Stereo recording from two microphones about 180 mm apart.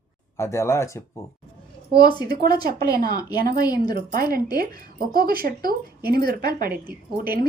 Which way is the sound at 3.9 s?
55° right (ahead or behind).